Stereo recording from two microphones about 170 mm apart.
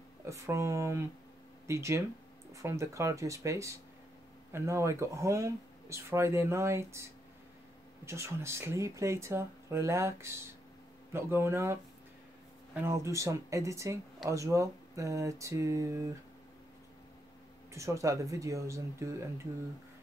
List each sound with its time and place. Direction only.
0.3 s speech: 15° right (ahead or behind)
12.8 s speech: 15° right (ahead or behind)
17.7 s speech: 20° right (ahead or behind)